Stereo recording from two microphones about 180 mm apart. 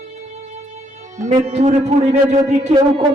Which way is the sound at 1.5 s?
40° right (ahead or behind).